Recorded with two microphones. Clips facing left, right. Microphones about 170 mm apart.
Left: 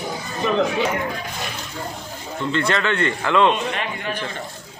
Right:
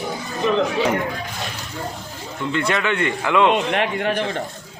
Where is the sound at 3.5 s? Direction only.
65° right (ahead or behind).